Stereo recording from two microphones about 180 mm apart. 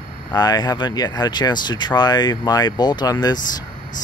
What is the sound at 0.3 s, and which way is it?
Speech, 25° left (ahead or behind).